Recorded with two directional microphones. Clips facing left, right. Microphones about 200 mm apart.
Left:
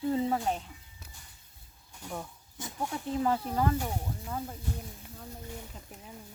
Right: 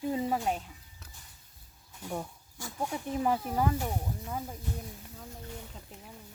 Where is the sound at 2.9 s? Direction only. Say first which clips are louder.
Left 1 dB; 15° right (ahead or behind).